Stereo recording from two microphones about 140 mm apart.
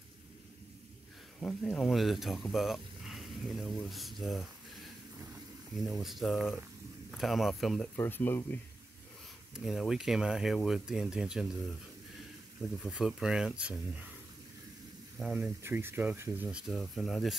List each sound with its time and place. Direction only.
1.4 s speech: 5° left (ahead or behind)
5.8 s speech: centre (ahead or behind)
7.9 s speech: 15° left (ahead or behind)
9.5 s speech: centre (ahead or behind)
12.8 s speech: 5° right (ahead or behind)
15.1 s speech: 5° right (ahead or behind)
15.6 s speech: 15° right (ahead or behind); by 17.4 s 5° left (ahead or behind)